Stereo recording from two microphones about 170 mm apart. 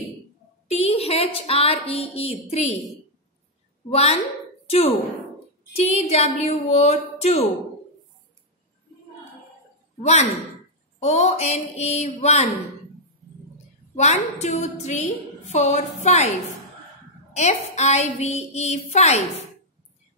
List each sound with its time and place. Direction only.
0.7 s a woman's voice: 35° left (ahead or behind)
3.9 s a woman's voice: 35° left (ahead or behind)
11.0 s a woman's voice: 40° left (ahead or behind)
13.9 s a woman's voice: 40° left (ahead or behind)